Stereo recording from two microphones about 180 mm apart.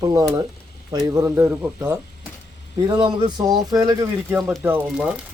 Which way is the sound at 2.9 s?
25° right (ahead or behind).